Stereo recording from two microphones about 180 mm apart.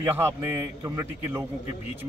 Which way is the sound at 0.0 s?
15° right (ahead or behind).